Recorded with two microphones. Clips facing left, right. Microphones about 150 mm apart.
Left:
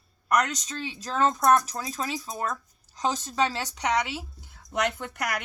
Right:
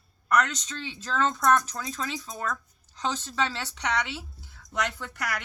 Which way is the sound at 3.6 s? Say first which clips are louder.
Left 3 dB; 10° left (ahead or behind).